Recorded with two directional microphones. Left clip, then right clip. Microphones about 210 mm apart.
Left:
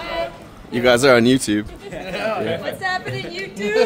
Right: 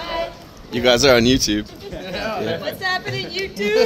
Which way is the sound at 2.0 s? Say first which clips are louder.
Left 2 dB; 5° right (ahead or behind).